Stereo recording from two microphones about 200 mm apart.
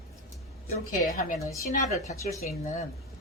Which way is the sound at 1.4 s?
15° left (ahead or behind).